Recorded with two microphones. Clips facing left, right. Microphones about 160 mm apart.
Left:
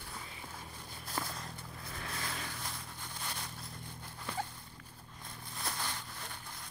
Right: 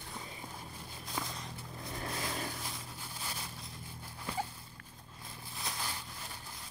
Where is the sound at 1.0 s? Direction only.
Centre (ahead or behind).